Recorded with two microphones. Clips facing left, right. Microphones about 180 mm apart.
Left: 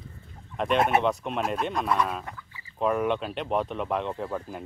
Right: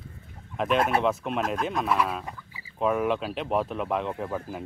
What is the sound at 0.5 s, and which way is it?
Speech, centre (ahead or behind).